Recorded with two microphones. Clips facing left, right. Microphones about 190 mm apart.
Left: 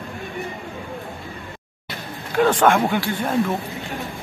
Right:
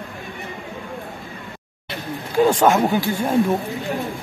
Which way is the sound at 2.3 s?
10° right (ahead or behind).